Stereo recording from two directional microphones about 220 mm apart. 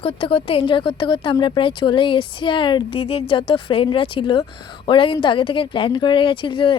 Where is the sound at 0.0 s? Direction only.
25° left (ahead or behind).